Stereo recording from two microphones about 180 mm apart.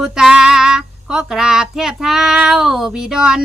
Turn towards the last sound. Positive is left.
turn(degrees=-5)  # may be behind; listen again after turning